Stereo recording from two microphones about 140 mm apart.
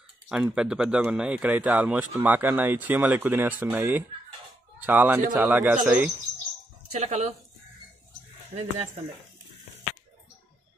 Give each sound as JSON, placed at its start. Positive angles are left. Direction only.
{"t": 0.3, "sound": "speech", "side_deg": -5}
{"t": 6.9, "sound": "speech", "side_deg": -50}
{"t": 8.5, "sound": "speech", "side_deg": -55}